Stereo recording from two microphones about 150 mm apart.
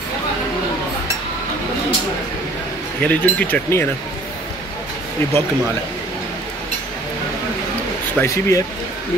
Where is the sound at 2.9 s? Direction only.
10° left (ahead or behind).